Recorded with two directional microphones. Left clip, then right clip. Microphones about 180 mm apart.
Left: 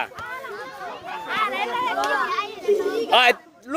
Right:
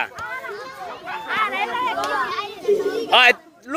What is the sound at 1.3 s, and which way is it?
Chatter, 65° left (ahead or behind).